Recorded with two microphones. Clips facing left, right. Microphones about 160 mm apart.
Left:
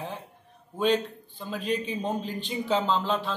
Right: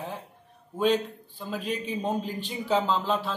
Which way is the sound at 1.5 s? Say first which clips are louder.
Left 2 dB; 5° right (ahead or behind).